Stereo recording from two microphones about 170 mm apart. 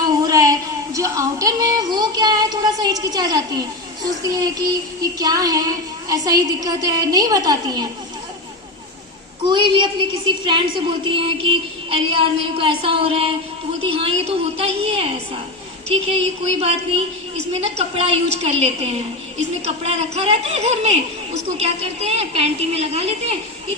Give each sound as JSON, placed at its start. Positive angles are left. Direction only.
{"t": 0.0, "sound": "a sound", "side_deg": -20}
{"t": 0.9, "sound": "music", "side_deg": -20}
{"t": 5.2, "sound": "a woman's voice", "side_deg": -20}
{"t": 9.4, "sound": "a woman's voice", "side_deg": -25}
{"t": 16.6, "sound": "a woman's voice", "side_deg": -35}